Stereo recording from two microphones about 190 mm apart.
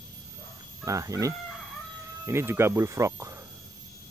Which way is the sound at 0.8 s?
15° right (ahead or behind).